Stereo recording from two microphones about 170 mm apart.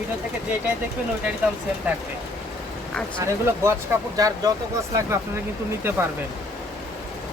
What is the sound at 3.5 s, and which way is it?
Speech, 15° right (ahead or behind).